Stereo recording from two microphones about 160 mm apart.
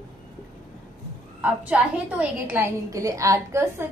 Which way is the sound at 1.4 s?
10° right (ahead or behind).